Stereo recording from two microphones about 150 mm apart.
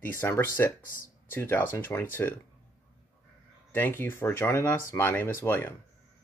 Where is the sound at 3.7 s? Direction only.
15° left (ahead or behind).